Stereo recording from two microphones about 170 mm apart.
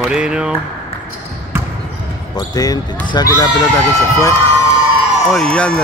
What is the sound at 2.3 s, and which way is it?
Speech, 20° left (ahead or behind).